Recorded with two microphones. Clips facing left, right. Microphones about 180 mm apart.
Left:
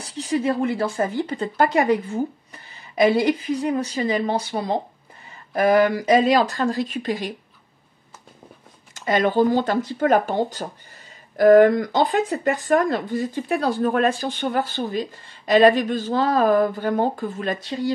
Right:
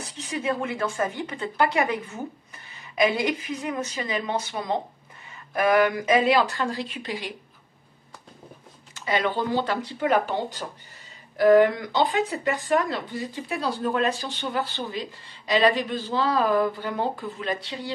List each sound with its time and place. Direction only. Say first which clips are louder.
0.0 s a woman's voice: left 7 dB; 35° left (ahead or behind)
8.9 s speech: left 6 dB; 45° left (ahead or behind)